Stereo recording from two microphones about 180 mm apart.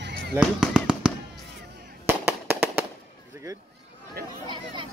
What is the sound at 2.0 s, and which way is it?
Fireworks, 10° right (ahead or behind).